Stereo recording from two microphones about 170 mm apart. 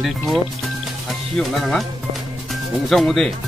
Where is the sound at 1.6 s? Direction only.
Centre (ahead or behind).